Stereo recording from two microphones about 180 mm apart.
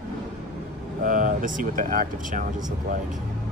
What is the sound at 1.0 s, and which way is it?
Speech, 50° right (ahead or behind).